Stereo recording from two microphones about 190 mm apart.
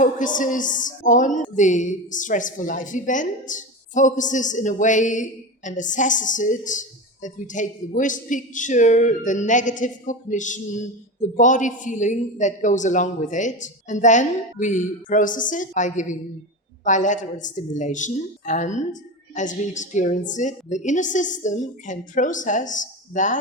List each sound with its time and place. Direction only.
0.0 s a woman's voice: 45° left (ahead or behind)